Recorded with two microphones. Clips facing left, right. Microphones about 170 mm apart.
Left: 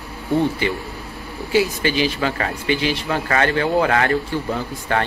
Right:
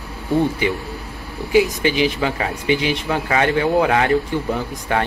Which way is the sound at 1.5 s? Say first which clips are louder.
Right 2 dB; 15° right (ahead or behind).